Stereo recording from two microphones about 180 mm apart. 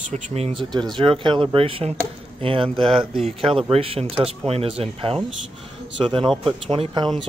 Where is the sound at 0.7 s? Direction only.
25° right (ahead or behind).